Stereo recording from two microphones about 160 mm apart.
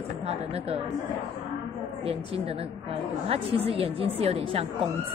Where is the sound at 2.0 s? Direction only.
35° right (ahead or behind).